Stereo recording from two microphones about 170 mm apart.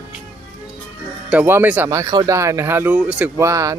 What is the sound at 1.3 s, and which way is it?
Speech, 10° right (ahead or behind).